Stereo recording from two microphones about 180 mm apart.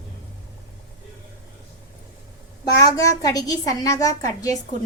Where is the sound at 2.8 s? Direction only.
20° left (ahead or behind).